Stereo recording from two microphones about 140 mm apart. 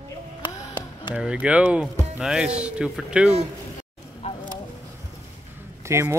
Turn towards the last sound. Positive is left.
turn(degrees=-20)  # may be behind; listen again after turning